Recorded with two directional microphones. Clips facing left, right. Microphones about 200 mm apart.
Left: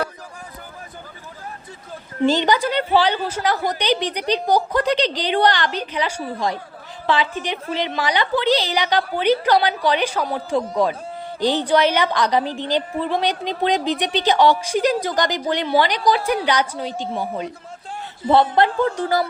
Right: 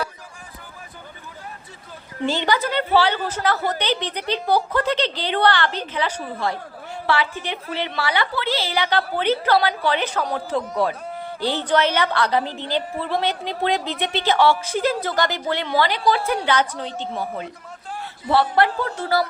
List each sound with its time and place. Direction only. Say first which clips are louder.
2.3 s a woman's voice: even; 15° left (ahead or behind)
18.3 s speech: left 3 dB; 20° left (ahead or behind)